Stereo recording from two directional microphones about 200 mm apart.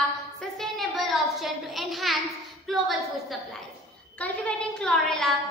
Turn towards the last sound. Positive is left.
turn(degrees=0)  # may be behind; listen again after turning